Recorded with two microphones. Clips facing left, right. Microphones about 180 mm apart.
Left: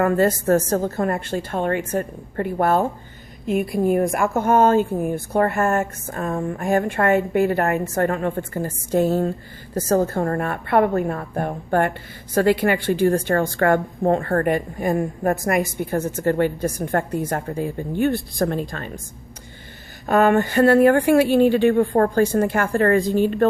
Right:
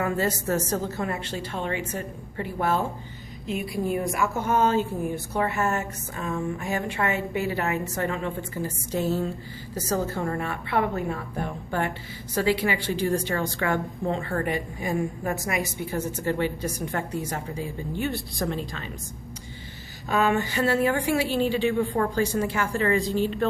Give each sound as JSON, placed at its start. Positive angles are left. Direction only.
{"t": 0.0, "sound": "a woman's voice", "side_deg": 55}
{"t": 20.1, "sound": "a woman's voice", "side_deg": 55}